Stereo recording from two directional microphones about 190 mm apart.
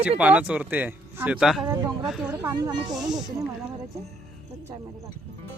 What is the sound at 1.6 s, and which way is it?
Speech, 20° right (ahead or behind).